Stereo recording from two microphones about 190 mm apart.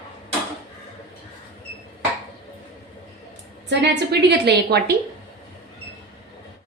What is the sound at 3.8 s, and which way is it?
A woman's voice, 60° right (ahead or behind).